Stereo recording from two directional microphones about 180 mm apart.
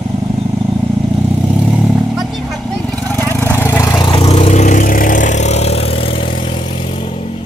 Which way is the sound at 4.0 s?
30° left (ahead or behind).